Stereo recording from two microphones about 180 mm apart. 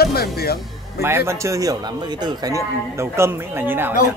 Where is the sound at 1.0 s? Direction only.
15° right (ahead or behind).